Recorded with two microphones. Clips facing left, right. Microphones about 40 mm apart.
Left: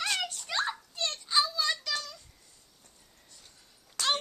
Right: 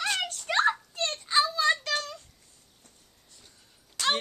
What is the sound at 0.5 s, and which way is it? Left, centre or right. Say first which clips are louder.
Children playing: right 10 dB; right.